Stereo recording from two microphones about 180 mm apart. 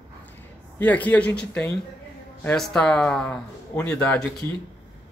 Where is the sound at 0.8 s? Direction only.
10° left (ahead or behind).